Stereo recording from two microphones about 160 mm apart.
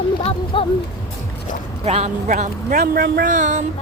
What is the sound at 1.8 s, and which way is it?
Speech, 45° right (ahead or behind).